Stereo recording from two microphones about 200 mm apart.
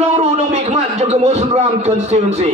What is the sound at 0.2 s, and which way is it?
A man's voice, 35° right (ahead or behind).